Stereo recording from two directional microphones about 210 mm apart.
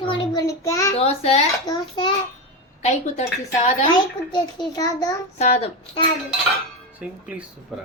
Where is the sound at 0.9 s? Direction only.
30° left (ahead or behind).